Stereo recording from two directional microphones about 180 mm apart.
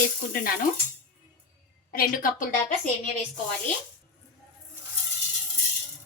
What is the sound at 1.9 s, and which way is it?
Speech, 50° left (ahead or behind).